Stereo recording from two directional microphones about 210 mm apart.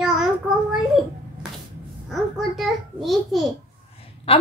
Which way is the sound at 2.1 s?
Centre (ahead or behind).